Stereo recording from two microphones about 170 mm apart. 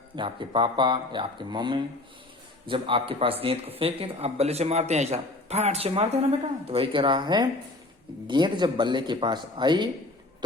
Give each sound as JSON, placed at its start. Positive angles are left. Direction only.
{"t": 0.2, "sound": "a man's voice", "side_deg": -30}